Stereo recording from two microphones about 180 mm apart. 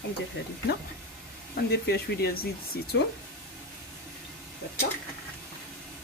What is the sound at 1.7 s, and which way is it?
Speech, 65° left (ahead or behind).